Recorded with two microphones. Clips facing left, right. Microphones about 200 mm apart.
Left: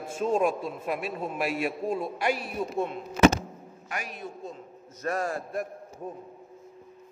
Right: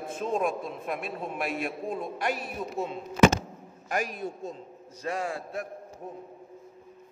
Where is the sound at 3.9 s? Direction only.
40° right (ahead or behind).